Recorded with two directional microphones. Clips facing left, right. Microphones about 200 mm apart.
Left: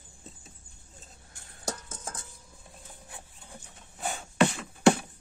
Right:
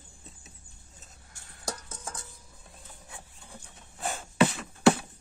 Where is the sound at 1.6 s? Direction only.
25° left (ahead or behind).